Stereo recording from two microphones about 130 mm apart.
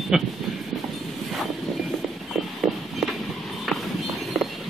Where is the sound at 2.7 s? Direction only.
5° right (ahead or behind).